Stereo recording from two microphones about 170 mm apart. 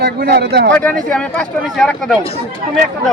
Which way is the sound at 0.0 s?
65° right (ahead or behind).